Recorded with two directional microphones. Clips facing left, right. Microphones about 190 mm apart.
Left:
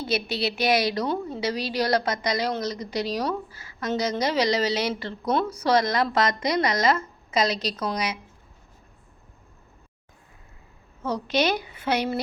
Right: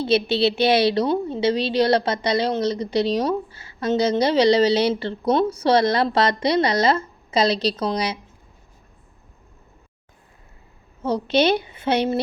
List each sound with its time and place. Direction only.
0.0 s a woman's voice: 30° right (ahead or behind)
11.0 s a woman's voice: 30° right (ahead or behind)